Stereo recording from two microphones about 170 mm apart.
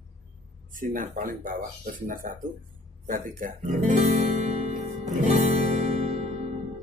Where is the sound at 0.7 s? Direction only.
50° right (ahead or behind).